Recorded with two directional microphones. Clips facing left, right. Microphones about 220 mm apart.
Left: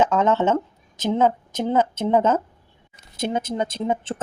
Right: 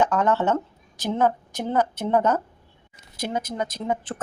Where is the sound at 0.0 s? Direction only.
20° left (ahead or behind).